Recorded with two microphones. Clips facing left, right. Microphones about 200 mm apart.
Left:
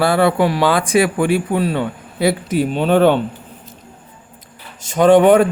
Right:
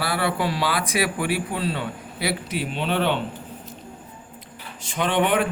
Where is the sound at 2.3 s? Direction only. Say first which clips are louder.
Left 10 dB; 45° left (ahead or behind).